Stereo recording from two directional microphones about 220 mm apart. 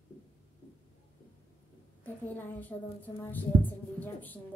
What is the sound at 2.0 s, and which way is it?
A woman's voice, 10° left (ahead or behind).